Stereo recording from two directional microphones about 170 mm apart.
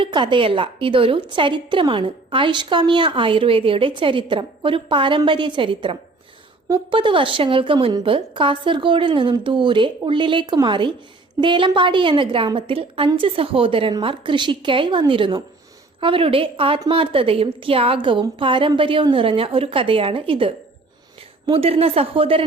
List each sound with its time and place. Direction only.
0.0 s a woman's voice: 30° right (ahead or behind)